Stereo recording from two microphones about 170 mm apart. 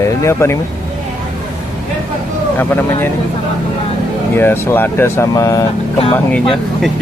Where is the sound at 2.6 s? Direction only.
10° left (ahead or behind).